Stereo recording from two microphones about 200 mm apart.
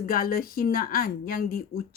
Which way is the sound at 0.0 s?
45° left (ahead or behind).